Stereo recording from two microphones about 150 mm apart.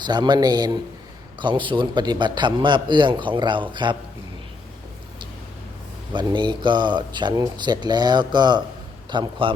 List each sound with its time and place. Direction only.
0.0 s a man's voice: 30° right (ahead or behind)
6.1 s a man's voice: 30° right (ahead or behind)